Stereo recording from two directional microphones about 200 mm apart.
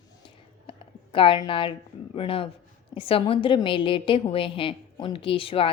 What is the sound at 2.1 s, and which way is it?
A woman's voice, 25° left (ahead or behind).